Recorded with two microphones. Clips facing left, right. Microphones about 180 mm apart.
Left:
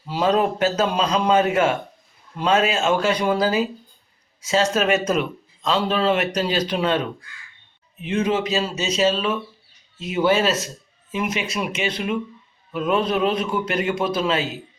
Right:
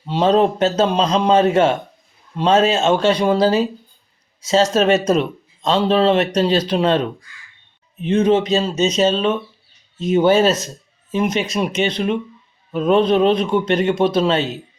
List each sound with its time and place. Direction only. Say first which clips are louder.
0.0 s a man's voice: right 5 dB; 25° right (ahead or behind)